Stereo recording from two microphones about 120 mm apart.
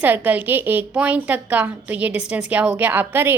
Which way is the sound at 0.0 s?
15° right (ahead or behind).